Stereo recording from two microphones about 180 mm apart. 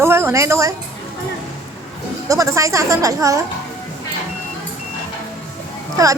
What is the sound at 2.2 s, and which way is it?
A woman's voice, 20° right (ahead or behind).